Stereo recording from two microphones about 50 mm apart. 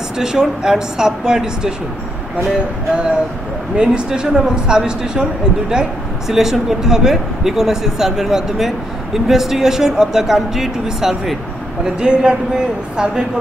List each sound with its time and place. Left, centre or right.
0.2 s speech: centre
3.7 s speech: centre